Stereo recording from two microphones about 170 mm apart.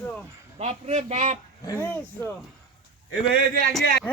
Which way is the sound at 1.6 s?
15° left (ahead or behind).